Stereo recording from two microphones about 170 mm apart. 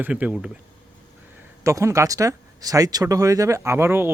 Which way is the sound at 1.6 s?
15° right (ahead or behind).